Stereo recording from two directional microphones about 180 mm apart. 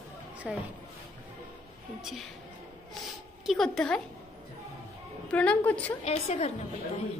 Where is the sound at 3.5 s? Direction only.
5° left (ahead or behind).